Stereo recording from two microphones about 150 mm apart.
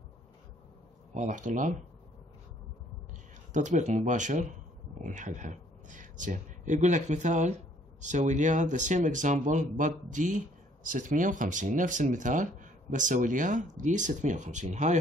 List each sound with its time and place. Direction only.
1.1 s speech: 55° right (ahead or behind)
3.5 s speech: 55° right (ahead or behind)